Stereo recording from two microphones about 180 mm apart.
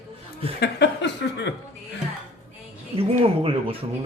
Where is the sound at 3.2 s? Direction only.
30° right (ahead or behind).